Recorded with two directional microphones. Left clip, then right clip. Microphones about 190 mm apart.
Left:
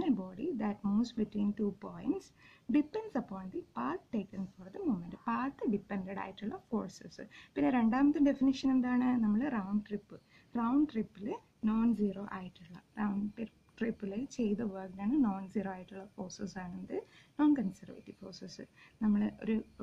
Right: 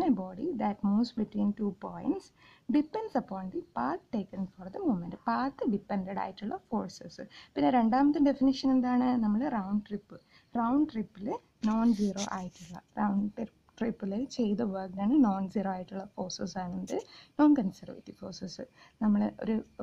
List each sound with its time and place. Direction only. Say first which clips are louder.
0.0 s speech: right 5 dB; 30° right (ahead or behind)